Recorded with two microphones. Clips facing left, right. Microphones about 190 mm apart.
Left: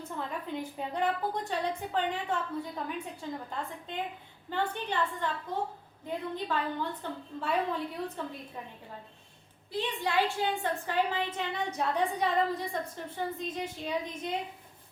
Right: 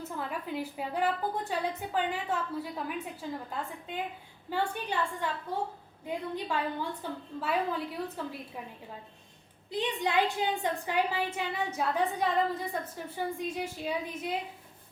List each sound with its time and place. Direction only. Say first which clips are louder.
0.2 s a woman's voice: even; 5° right (ahead or behind)
9.7 s a woman's voice: right 1 dB; 20° right (ahead or behind)